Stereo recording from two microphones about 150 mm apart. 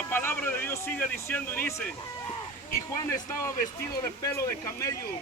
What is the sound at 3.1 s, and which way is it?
Speech, 20° left (ahead or behind).